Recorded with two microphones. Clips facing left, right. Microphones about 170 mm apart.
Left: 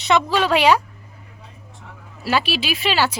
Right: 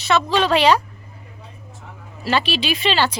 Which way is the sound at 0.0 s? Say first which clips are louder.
Even; 15° left (ahead or behind).